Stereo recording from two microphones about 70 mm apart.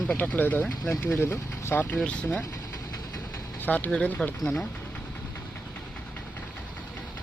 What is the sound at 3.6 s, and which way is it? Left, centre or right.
Speech, left.